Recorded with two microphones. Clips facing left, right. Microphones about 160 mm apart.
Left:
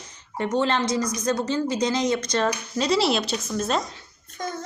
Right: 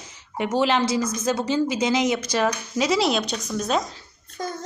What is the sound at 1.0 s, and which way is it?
Speech, 25° right (ahead or behind).